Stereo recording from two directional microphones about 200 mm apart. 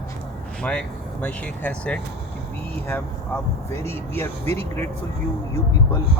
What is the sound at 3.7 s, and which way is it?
Speech, 10° left (ahead or behind).